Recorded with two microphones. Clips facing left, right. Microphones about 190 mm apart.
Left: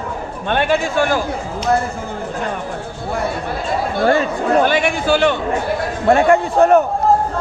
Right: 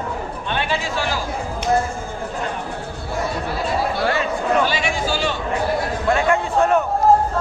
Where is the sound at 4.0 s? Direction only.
40° left (ahead or behind).